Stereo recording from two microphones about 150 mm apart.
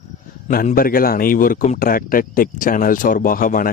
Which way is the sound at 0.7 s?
75° left (ahead or behind).